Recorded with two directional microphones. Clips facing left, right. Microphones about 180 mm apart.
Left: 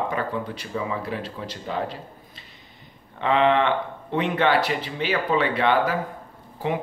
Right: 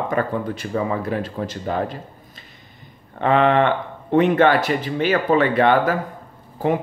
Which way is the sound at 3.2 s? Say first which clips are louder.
Right 3 dB; 50° right (ahead or behind).